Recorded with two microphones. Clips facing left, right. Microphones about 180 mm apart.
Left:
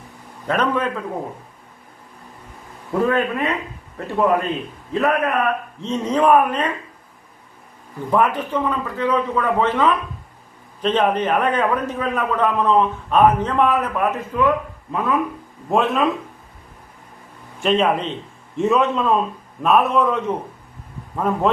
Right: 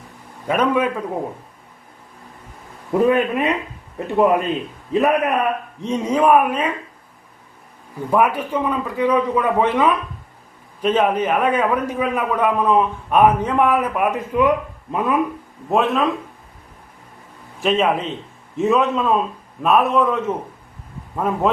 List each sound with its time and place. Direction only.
0.4 s a man's voice: 10° right (ahead or behind)
3.0 s a man's voice: 20° right (ahead or behind)
8.1 s a man's voice: 10° right (ahead or behind)
15.7 s a man's voice: centre (ahead or behind)
17.6 s a man's voice: centre (ahead or behind)